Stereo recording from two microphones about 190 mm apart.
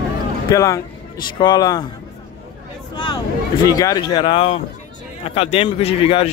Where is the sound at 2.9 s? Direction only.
20° left (ahead or behind).